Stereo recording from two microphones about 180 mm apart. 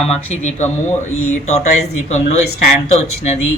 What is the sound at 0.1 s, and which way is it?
Speech, 40° left (ahead or behind).